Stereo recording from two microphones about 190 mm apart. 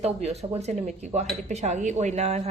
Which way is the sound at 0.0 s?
35° right (ahead or behind).